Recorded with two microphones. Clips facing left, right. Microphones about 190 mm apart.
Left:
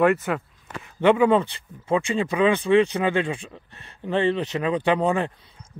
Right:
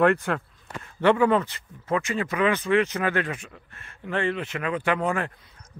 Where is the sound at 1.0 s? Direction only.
20° left (ahead or behind).